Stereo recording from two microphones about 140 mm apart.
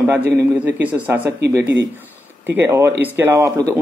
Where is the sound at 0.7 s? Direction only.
10° right (ahead or behind).